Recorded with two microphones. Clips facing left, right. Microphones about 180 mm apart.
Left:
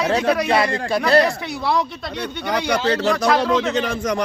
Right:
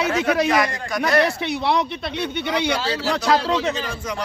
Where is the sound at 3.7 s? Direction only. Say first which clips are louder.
Left 7 dB; 80° left.